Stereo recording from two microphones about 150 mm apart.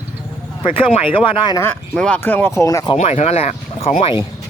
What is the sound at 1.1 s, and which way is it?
Speech, 35° left (ahead or behind).